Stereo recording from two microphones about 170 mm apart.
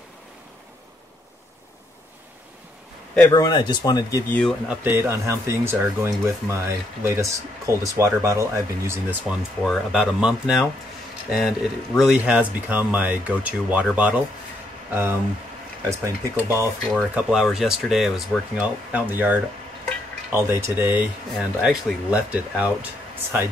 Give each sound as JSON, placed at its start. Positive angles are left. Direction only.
{"t": 3.2, "sound": "speech", "side_deg": 20}
{"t": 4.3, "sound": "speech", "side_deg": 5}
{"t": 4.6, "sound": "speech", "side_deg": -15}
{"t": 9.6, "sound": "speech", "side_deg": 0}
{"t": 15.9, "sound": "speech", "side_deg": -15}
{"t": 16.9, "sound": "speech", "side_deg": 0}